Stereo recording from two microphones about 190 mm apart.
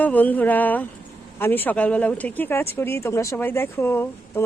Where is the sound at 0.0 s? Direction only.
10° left (ahead or behind).